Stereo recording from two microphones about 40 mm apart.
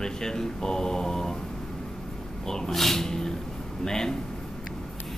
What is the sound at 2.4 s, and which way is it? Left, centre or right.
Speech, centre.